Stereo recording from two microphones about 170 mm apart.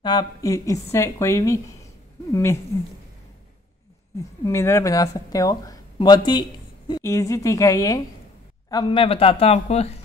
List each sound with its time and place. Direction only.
0.0 s a woman's voice: 25° left (ahead or behind)
4.2 s speech: 15° left (ahead or behind); by 9.9 s 40° left (ahead or behind)